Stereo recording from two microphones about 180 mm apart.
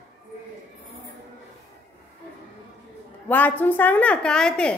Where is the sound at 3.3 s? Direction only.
10° left (ahead or behind).